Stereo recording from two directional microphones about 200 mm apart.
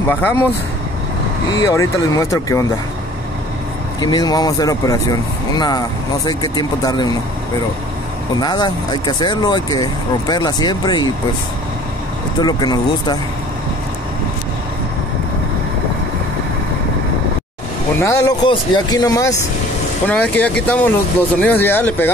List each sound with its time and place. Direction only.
0.1 s speech: 10° left (ahead or behind)
1.5 s speech: 15° left (ahead or behind)
4.0 s speech: 20° left (ahead or behind)
8.4 s speech: 20° left (ahead or behind)
12.4 s speech: 20° left (ahead or behind)
18.0 s speech: 15° left (ahead or behind)